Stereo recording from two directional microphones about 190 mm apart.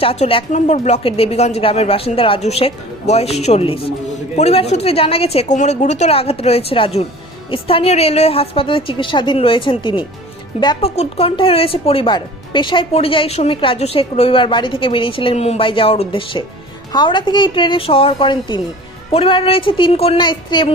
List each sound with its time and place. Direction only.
0.0 s speech: 30° left (ahead or behind)